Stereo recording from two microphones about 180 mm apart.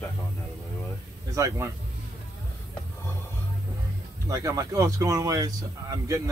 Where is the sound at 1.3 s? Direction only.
15° right (ahead or behind).